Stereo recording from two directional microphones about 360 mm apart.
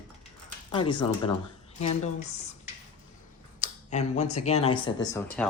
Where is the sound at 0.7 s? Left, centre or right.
Centre.